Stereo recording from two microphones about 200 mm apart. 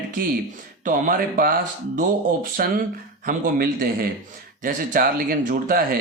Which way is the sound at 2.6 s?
50° right (ahead or behind).